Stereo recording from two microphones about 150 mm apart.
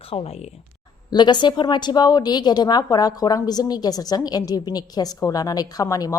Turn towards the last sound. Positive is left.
turn(degrees=25)  # may be behind; listen again after turning